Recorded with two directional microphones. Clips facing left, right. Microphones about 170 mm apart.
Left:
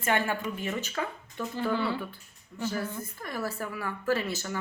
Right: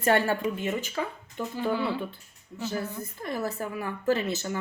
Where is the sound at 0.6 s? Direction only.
15° right (ahead or behind).